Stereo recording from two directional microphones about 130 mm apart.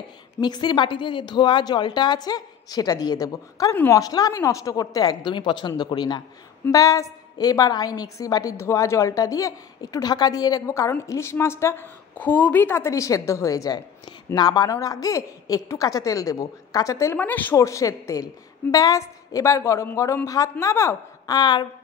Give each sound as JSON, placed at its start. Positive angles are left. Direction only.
{"t": 0.4, "sound": "speech", "side_deg": 35}
{"t": 3.7, "sound": "speech", "side_deg": 15}
{"t": 4.0, "sound": "a woman's voice", "side_deg": 30}
{"t": 17.6, "sound": "a woman's voice", "side_deg": 25}